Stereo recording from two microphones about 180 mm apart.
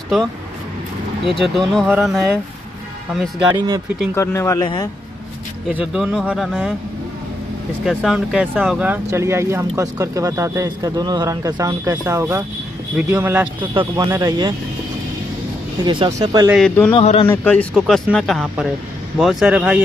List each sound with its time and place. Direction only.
1.3 s speech: centre (ahead or behind)
3.5 s speech: 20° right (ahead or behind)
4.1 s speech: 15° left (ahead or behind)
5.7 s speech: 5° right (ahead or behind)
7.8 s speech: centre (ahead or behind); by 14.5 s 20° right (ahead or behind)
15.8 s speech: 25° right (ahead or behind)
16.6 s speech: 5° left (ahead or behind)
16.9 s a man's voice: 30° left (ahead or behind)
17.4 s speech: 10° left (ahead or behind)